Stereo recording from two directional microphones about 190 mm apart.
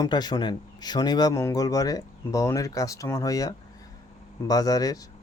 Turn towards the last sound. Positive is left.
turn(degrees=20)  # may be behind; listen again after turning